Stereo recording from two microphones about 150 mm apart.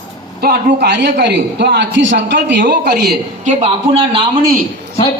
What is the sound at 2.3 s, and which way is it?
Speech, 80° right.